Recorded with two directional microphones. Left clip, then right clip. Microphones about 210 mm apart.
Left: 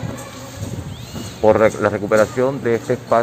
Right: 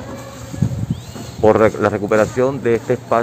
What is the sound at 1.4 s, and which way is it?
Speech, 40° right (ahead or behind).